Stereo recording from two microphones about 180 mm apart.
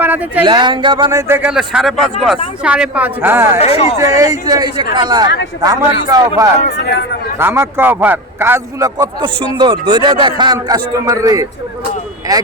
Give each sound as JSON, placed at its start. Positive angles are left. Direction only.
{"t": 0.0, "sound": "speech", "side_deg": -10}
{"t": 0.4, "sound": "speech", "side_deg": -25}
{"t": 1.3, "sound": "a man's voice", "side_deg": -10}
{"t": 3.6, "sound": "speech", "side_deg": 35}
{"t": 4.0, "sound": "speech", "side_deg": -20}
{"t": 6.7, "sound": "speech", "side_deg": 65}
{"t": 7.3, "sound": "a man's voice", "side_deg": -15}